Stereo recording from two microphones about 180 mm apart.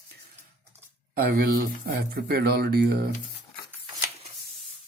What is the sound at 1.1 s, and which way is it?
Speech, 55° right (ahead or behind).